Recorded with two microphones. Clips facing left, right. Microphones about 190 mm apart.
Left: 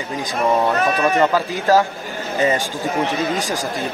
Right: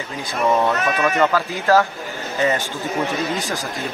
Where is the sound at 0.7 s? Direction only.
35° left (ahead or behind).